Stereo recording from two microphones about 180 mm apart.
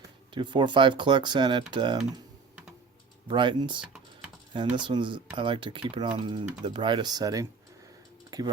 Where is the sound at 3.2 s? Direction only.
25° right (ahead or behind).